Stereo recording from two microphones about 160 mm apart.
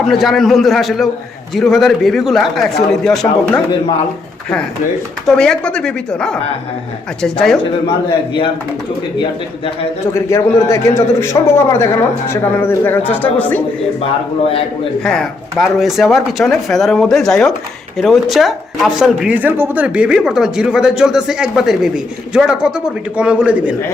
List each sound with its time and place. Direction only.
0.1 s speech: centre (ahead or behind)
5.2 s speech: 5° left (ahead or behind)
7.9 s a man's voice: 30° left (ahead or behind)
10.2 s a man's voice: 15° left (ahead or behind)
15.0 s speech: 5° left (ahead or behind)